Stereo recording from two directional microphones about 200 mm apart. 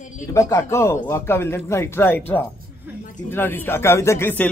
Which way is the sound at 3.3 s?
10° left (ahead or behind).